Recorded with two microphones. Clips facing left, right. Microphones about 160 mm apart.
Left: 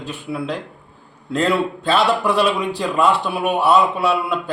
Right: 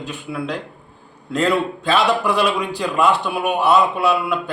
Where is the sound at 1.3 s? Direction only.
Centre (ahead or behind).